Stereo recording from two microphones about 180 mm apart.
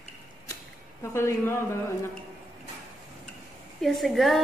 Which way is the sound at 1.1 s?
15° left (ahead or behind).